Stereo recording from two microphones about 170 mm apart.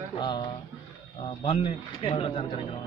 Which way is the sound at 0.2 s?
25° left (ahead or behind).